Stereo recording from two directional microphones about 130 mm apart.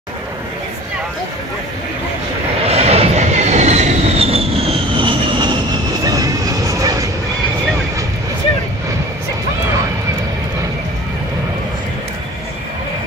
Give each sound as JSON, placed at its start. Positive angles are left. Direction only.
{"t": 2.7, "sound": "train", "side_deg": -55}
{"t": 6.0, "sound": "music", "side_deg": -30}